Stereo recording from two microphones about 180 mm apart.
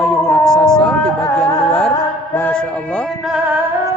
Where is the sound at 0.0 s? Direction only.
5° left (ahead or behind).